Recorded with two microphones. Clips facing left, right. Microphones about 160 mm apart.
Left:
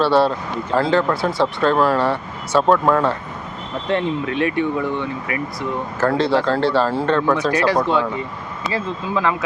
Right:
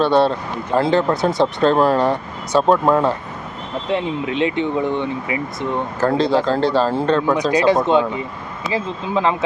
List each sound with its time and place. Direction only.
0.0 s speech: 20° right (ahead or behind)